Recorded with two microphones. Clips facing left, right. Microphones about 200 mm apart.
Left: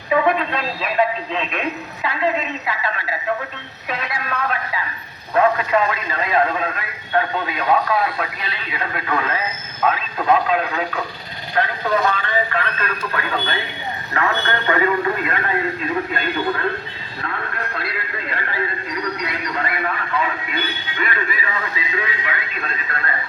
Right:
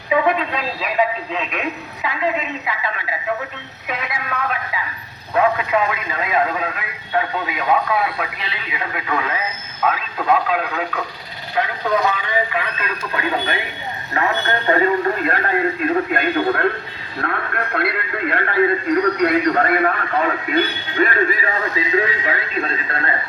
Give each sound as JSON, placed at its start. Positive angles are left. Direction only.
{"t": 0.1, "sound": "a man's voice", "side_deg": -5}
{"t": 3.8, "sound": "a man's voice", "side_deg": -10}
{"t": 14.7, "sound": "a man's voice", "side_deg": -35}
{"t": 16.1, "sound": "a man's voice", "side_deg": -55}